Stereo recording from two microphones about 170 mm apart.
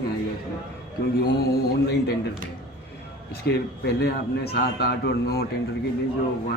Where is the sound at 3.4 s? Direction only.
70° left (ahead or behind).